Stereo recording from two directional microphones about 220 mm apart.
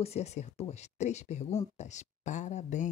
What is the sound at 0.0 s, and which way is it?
Speech, 30° left (ahead or behind).